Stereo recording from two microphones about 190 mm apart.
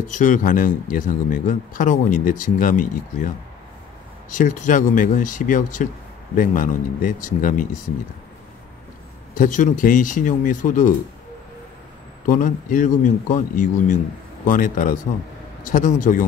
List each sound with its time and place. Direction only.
0.1 s speech: 40° left (ahead or behind)
4.4 s speech: 40° left (ahead or behind)
9.3 s speech: 45° left (ahead or behind)
12.3 s speech: 45° left (ahead or behind)